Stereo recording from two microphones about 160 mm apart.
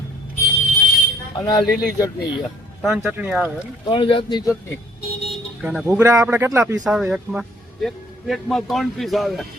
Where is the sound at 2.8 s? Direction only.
10° right (ahead or behind).